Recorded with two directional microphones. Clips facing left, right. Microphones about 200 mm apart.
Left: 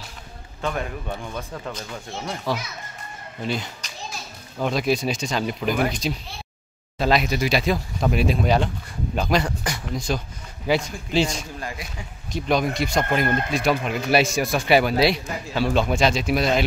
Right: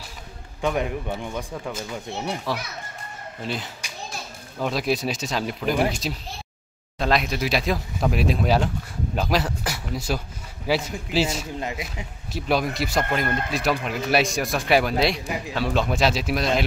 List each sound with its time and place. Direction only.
0.6 s speech: 15° right (ahead or behind)
2.0 s speech: 20° right (ahead or behind)
3.4 s a child's voice: centre (ahead or behind)
11.6 s speech: 20° right (ahead or behind)
12.3 s speech: 5° right (ahead or behind)